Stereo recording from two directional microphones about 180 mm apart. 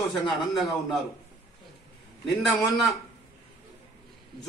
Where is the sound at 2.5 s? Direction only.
Centre (ahead or behind).